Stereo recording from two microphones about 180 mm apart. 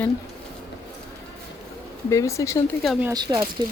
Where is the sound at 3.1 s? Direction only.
20° right (ahead or behind).